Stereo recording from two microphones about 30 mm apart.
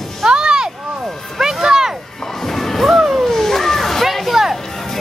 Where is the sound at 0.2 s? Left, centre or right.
Right.